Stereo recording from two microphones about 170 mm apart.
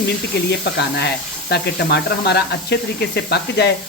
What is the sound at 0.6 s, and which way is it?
Speech, 75° left (ahead or behind).